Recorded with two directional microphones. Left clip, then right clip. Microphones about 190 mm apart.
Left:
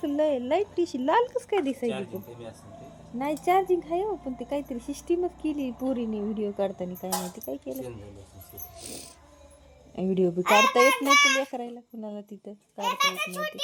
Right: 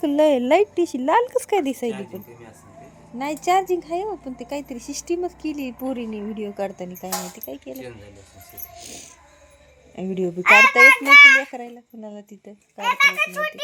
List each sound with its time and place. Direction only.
0.0 s a woman's voice: 40° right (ahead or behind)
0.8 s speech: 25° right (ahead or behind)
1.4 s speech: 35° right (ahead or behind)
3.2 s a child's voice: 10° right (ahead or behind)
10.4 s a child's voice: 10° left (ahead or behind)
11.5 s a child's voice: centre (ahead or behind)